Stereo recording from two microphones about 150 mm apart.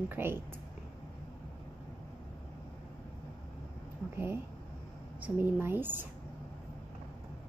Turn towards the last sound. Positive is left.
turn(degrees=-15)  # may be behind; listen again after turning